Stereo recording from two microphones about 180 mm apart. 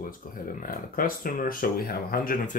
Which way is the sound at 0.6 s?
50° left (ahead or behind).